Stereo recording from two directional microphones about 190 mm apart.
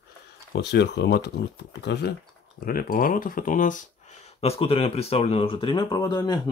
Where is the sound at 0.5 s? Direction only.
65° left (ahead or behind).